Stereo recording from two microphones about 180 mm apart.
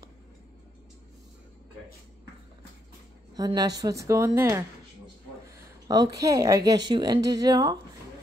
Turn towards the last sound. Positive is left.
turn(degrees=-20)  # may be behind; listen again after turning